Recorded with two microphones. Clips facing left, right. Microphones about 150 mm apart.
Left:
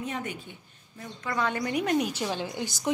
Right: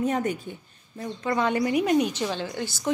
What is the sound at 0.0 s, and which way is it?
A woman's voice, 45° right (ahead or behind).